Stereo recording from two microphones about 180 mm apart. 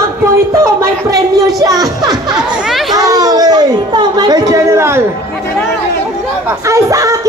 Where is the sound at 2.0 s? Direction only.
20° right (ahead or behind).